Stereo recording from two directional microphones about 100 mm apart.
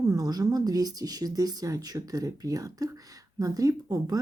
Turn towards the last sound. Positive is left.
turn(degrees=-40)  # may be behind; listen again after turning